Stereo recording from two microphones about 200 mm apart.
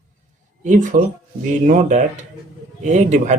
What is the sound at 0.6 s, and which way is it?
Speech, 40° right (ahead or behind).